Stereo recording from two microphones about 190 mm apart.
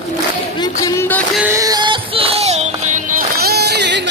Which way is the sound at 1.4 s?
15° right (ahead or behind).